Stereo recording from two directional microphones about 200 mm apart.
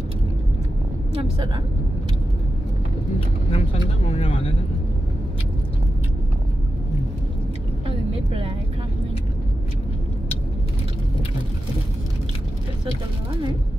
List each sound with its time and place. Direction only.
3.5 s speech: 30° left (ahead or behind)
8.1 s speech: 25° right (ahead or behind)